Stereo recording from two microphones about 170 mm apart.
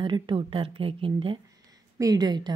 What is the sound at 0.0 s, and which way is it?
A woman's voice, 30° right (ahead or behind).